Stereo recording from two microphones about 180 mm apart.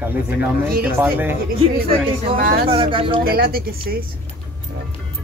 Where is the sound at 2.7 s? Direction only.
30° right (ahead or behind).